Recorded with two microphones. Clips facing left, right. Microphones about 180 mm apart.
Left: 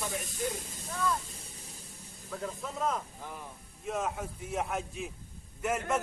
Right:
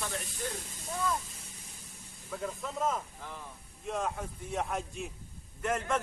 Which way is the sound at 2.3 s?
Centre (ahead or behind).